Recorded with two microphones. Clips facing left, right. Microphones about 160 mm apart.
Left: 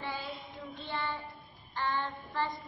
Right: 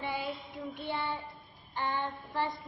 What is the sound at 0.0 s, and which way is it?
Child singing, 15° right (ahead or behind).